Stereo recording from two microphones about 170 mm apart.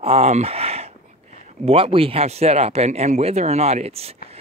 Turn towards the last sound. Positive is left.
turn(degrees=-35)  # may be behind; listen again after turning